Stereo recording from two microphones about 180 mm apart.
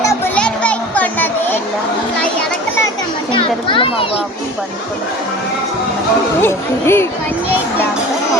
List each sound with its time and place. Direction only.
0.3 s children playing: 5° left (ahead or behind)
3.7 s a child's voice: 30° left (ahead or behind)
6.4 s speech: 15° left (ahead or behind)